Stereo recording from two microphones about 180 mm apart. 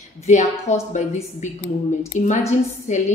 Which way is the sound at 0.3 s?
40° left (ahead or behind).